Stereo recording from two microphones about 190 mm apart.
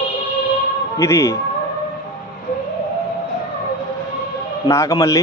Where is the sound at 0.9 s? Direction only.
15° left (ahead or behind).